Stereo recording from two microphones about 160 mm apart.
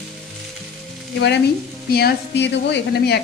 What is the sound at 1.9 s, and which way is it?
A woman's voice, 75° left (ahead or behind).